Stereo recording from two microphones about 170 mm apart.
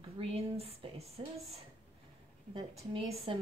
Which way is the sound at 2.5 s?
35° right (ahead or behind).